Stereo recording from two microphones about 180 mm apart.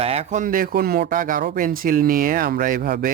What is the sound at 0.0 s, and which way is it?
Speech, 35° right (ahead or behind).